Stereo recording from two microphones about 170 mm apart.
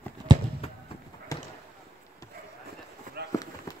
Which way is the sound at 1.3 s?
20° left (ahead or behind).